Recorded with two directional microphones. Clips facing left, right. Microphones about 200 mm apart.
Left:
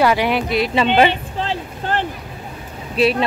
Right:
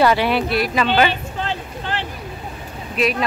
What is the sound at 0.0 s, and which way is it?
Speech, 15° left (ahead or behind).